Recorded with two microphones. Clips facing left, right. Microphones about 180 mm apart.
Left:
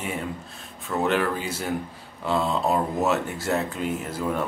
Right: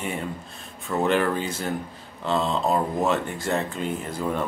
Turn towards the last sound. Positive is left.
turn(degrees=5)  # may be behind; listen again after turning